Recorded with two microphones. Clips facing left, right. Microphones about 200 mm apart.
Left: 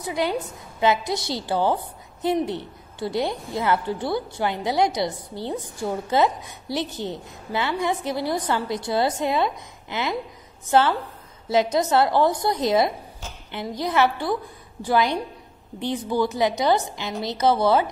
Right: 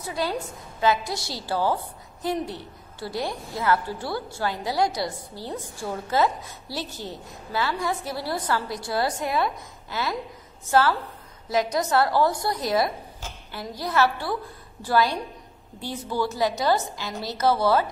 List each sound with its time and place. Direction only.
0.0 s a woman's voice: 20° left (ahead or behind)